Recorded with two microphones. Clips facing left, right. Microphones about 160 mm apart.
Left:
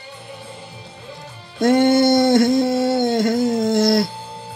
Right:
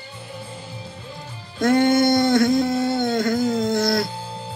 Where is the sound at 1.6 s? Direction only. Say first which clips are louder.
Left 3 dB; 25° left (ahead or behind).